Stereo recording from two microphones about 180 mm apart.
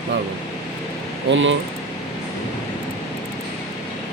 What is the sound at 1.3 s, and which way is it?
Speech, 90° right.